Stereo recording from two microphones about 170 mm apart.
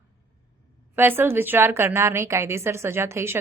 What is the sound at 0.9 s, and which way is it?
A woman's voice, 10° right (ahead or behind).